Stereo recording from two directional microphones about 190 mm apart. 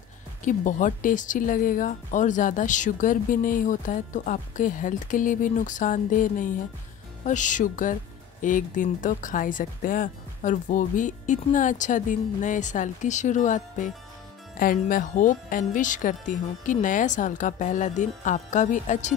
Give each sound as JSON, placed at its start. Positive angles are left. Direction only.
{"t": 0.4, "sound": "speech", "side_deg": 40}